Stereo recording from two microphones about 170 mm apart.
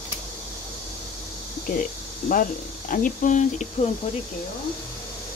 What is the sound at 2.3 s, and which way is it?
Speech, 50° left (ahead or behind).